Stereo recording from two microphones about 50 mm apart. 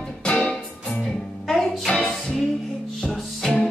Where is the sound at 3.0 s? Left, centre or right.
Centre.